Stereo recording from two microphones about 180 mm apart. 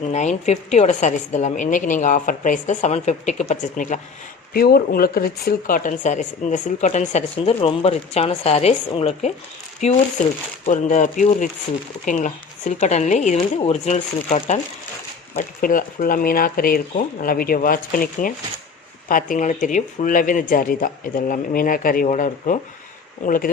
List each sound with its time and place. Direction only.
0.1 s speech: 40° left (ahead or behind)
4.5 s speech: 60° left (ahead or behind); by 14.6 s 40° left (ahead or behind)
15.4 s speech: 50° left (ahead or behind)